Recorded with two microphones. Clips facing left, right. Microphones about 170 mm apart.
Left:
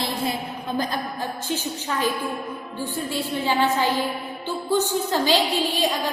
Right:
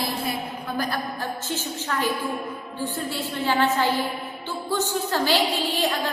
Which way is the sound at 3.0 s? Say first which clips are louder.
Left 2 dB; 15° left (ahead or behind).